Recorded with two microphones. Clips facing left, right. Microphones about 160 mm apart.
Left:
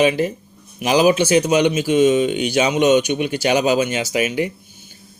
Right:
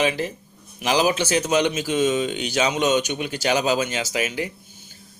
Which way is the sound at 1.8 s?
55° left (ahead or behind).